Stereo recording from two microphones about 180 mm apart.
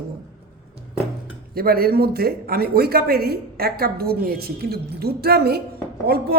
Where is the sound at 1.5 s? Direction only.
55° right (ahead or behind).